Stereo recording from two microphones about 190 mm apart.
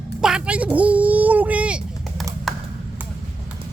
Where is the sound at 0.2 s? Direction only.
5° right (ahead or behind).